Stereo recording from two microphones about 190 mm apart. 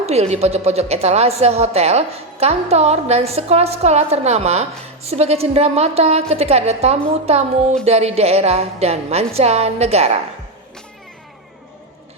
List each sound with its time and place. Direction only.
0.0 s a woman's voice: 35° right (ahead or behind)